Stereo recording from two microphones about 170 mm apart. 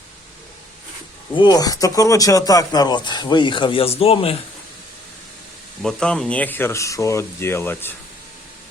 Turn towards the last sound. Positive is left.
turn(degrees=15)  # may be behind; listen again after turning